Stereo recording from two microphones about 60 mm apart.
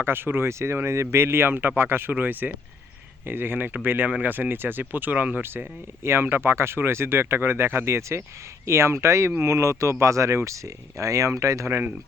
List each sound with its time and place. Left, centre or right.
0.0 s speech: right
6.0 s speech: right